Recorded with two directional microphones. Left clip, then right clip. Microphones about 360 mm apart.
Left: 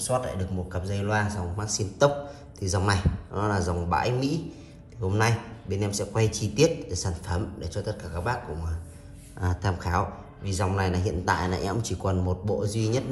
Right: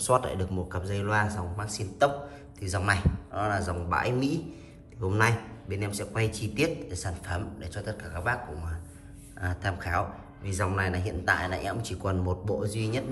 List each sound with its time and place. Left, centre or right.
0.0 s a man's voice: centre